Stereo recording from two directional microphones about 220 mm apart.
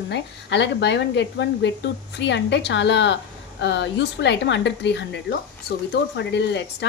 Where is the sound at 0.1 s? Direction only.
50° left (ahead or behind).